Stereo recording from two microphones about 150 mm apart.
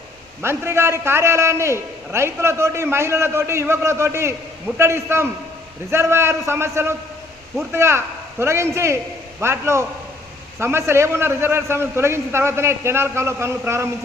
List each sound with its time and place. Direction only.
0.4 s a man's voice: 15° right (ahead or behind)